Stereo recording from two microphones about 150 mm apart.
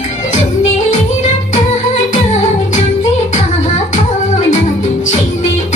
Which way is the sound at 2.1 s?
50° left (ahead or behind).